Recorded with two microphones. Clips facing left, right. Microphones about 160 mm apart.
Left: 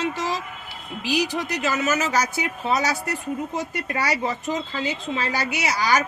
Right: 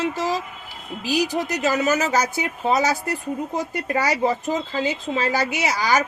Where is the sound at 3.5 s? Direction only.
40° right (ahead or behind).